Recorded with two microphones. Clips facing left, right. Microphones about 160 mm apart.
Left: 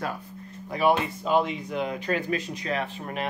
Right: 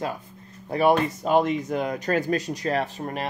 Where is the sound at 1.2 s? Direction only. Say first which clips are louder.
Right 3 dB; 50° right (ahead or behind).